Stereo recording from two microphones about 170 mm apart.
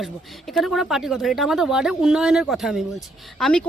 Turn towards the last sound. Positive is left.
turn(degrees=5)  # may be behind; listen again after turning